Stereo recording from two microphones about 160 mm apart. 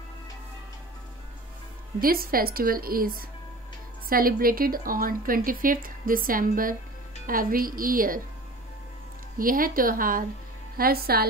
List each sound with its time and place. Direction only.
2.0 s speech: 65° right (ahead or behind)
9.4 s speech: 60° right (ahead or behind)